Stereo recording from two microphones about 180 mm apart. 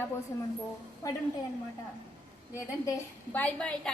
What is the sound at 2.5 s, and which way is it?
A woman's voice, 15° left (ahead or behind).